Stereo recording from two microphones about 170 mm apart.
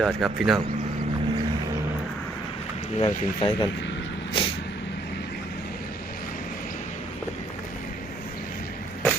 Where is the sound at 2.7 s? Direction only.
40° left (ahead or behind).